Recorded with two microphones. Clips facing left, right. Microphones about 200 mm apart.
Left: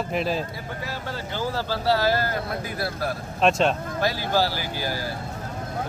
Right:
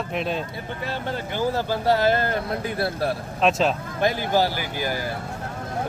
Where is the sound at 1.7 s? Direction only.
20° right (ahead or behind).